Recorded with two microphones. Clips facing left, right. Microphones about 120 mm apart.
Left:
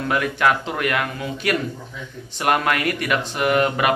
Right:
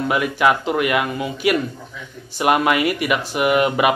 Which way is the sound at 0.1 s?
5° right (ahead or behind).